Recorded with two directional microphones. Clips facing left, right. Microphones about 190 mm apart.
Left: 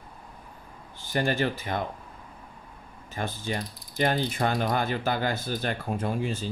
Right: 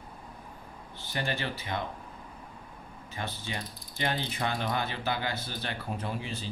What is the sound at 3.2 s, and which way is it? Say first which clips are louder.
Speech: left 6 dB; 45° left (ahead or behind).